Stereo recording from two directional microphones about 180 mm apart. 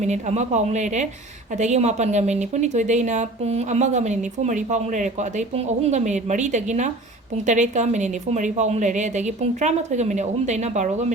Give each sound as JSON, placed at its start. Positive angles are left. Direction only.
{"t": 0.0, "sound": "a woman's voice", "side_deg": -40}